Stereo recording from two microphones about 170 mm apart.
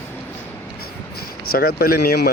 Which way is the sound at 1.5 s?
65° left (ahead or behind).